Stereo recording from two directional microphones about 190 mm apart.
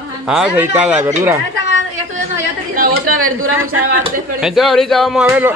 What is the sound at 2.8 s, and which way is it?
Speech, 45° right (ahead or behind).